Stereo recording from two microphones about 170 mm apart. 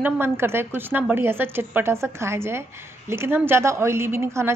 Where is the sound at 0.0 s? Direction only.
15° right (ahead or behind).